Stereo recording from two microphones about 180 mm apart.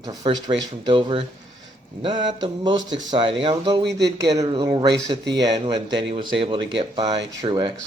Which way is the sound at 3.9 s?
70° right (ahead or behind).